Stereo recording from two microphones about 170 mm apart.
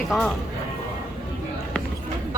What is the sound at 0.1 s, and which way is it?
Speech, 5° left (ahead or behind).